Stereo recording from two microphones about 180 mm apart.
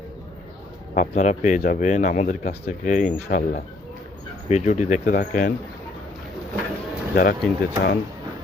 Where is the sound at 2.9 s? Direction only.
45° left (ahead or behind).